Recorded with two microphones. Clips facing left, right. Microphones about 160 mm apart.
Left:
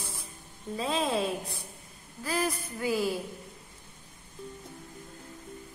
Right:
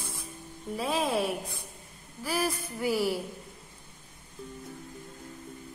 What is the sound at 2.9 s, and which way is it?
Speech, 20° left (ahead or behind).